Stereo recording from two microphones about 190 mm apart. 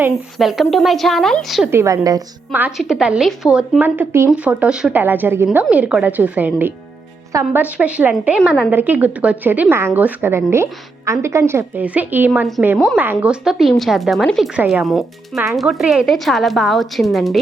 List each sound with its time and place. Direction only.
0.3 s speech: centre (ahead or behind)
1.7 s speech: 15° right (ahead or behind)
2.5 s speech: 5° right (ahead or behind)